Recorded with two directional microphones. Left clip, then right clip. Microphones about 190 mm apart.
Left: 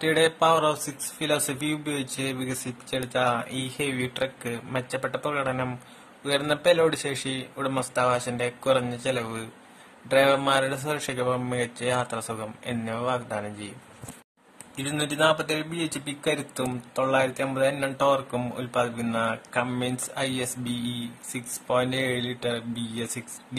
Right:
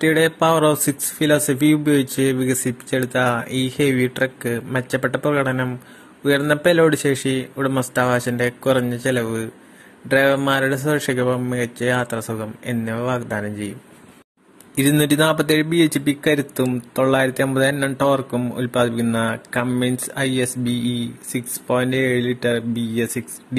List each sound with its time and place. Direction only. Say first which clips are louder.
0.0 s speech: right 5 dB; 15° right (ahead or behind)
14.8 s speech: right 8 dB; 30° right (ahead or behind); by 23.6 s 15° right (ahead or behind)